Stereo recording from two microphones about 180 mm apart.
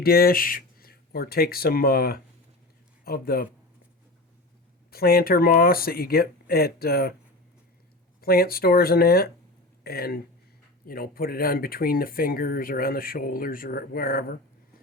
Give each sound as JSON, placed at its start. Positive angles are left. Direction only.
{"t": 0.0, "sound": "speech", "side_deg": 55}
{"t": 4.9, "sound": "speech", "side_deg": 60}
{"t": 8.2, "sound": "speech", "side_deg": 55}